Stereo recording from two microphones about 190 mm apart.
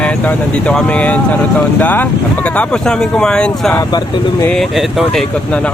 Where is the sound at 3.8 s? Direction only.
20° left (ahead or behind).